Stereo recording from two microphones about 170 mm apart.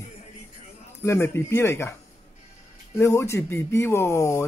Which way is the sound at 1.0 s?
15° left (ahead or behind).